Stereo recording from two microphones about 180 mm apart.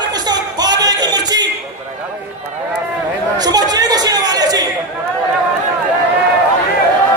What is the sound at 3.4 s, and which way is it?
Chatter, 20° right (ahead or behind).